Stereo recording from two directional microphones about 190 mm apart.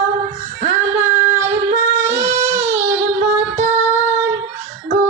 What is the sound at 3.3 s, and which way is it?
Music, 10° right (ahead or behind).